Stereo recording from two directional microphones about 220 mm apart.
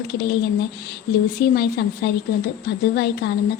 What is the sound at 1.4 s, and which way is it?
Speech, 45° left (ahead or behind).